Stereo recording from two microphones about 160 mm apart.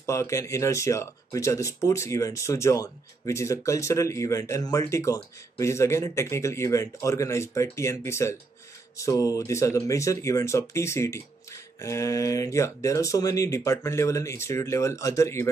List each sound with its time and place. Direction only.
0.0 s speech: 20° left (ahead or behind)